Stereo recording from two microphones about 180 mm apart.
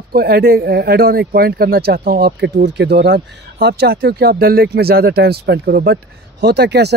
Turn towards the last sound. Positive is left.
turn(degrees=-65)  # may be behind; listen again after turning